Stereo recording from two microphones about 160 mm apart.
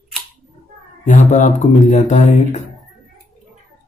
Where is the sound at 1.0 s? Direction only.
50° left (ahead or behind).